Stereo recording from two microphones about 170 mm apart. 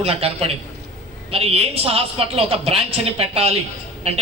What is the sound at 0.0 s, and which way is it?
A woman's voice, 35° right (ahead or behind).